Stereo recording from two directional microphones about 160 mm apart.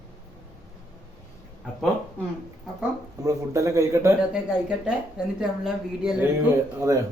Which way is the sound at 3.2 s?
20° right (ahead or behind).